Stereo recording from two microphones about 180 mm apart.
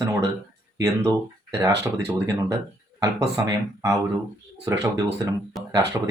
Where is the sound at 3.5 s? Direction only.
15° right (ahead or behind).